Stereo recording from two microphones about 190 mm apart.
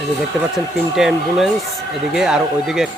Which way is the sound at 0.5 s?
Centre (ahead or behind).